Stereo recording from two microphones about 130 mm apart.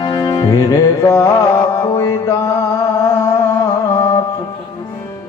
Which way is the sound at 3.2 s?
25° left (ahead or behind).